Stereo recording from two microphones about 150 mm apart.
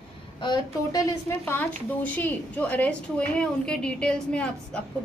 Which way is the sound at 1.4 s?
10° left (ahead or behind).